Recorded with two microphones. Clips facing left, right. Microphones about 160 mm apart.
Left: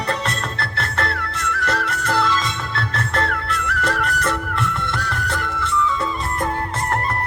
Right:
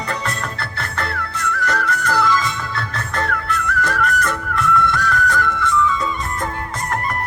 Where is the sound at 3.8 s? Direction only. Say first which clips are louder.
Even; 25° left (ahead or behind).